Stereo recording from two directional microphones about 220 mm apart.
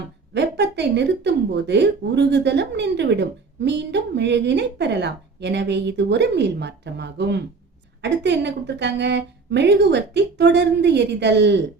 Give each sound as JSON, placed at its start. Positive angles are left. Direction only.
{"t": 0.3, "sound": "speech", "side_deg": -50}